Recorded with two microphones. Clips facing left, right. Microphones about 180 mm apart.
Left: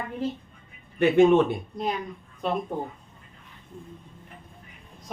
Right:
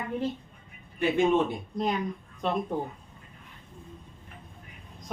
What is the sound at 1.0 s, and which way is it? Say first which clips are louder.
Speech: left 5 dB; 70° left (ahead or behind).